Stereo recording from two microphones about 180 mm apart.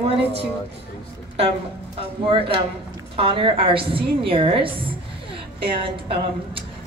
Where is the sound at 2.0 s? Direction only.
30° right (ahead or behind).